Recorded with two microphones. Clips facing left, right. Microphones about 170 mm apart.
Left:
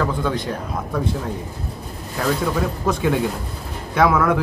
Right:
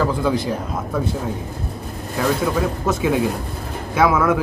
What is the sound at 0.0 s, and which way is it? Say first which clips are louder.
Speech: right 3 dB; 10° right (ahead or behind).